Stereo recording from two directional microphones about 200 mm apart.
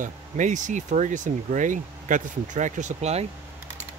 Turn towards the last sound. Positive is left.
turn(degrees=-35)  # may be behind; listen again after turning